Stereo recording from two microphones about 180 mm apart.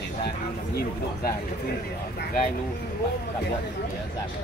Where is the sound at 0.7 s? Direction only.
55° left (ahead or behind).